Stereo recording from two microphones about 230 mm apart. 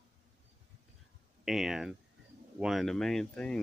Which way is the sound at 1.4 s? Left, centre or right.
Centre.